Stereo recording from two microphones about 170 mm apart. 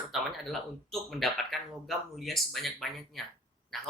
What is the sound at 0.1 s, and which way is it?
Speech, centre (ahead or behind).